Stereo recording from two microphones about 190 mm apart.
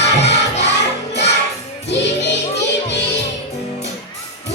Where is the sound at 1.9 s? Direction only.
65° left (ahead or behind).